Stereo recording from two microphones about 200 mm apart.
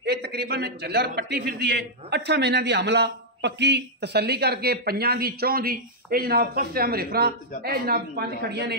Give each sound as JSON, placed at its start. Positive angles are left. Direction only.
{"t": 0.0, "sound": "a man's voice", "side_deg": -55}